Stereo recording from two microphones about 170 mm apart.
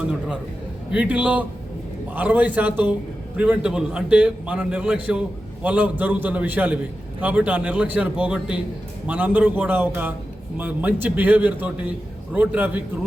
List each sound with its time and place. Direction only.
0.0 s a man's voice: 5° right (ahead or behind)